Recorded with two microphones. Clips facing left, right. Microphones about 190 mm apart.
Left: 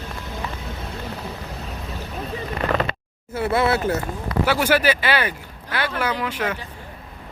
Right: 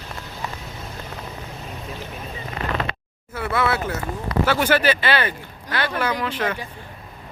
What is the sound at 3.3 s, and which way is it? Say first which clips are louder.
Speech: left 3 dB; 25° left (ahead or behind).